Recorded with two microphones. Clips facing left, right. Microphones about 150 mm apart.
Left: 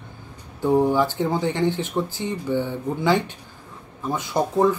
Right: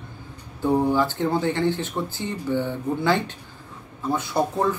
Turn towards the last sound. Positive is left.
turn(degrees=15)  # may be behind; listen again after turning